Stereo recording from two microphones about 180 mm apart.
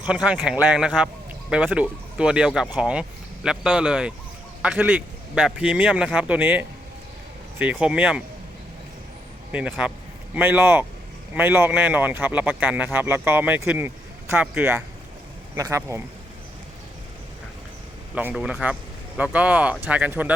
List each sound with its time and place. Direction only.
0.0 s a man's voice: 5° right (ahead or behind)
9.5 s speech: 10° right (ahead or behind)
18.1 s speech: 10° right (ahead or behind)